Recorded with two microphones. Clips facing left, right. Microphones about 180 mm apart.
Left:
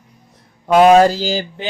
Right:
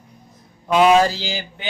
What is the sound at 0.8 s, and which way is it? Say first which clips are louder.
Speech: left 5 dB; 45° left (ahead or behind).